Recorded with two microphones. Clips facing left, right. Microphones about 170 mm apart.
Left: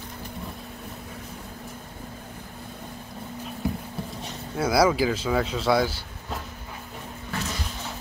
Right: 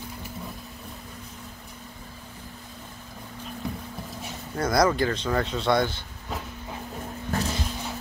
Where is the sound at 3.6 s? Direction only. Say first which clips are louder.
Left 5 dB; 5° left (ahead or behind).